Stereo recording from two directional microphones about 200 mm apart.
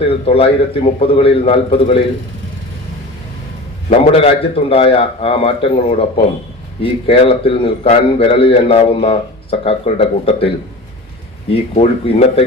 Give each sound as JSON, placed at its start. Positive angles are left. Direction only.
{"t": 0.0, "sound": "a man's voice", "side_deg": 30}
{"t": 3.8, "sound": "a man's voice", "side_deg": 30}
{"t": 11.8, "sound": "speech", "side_deg": 30}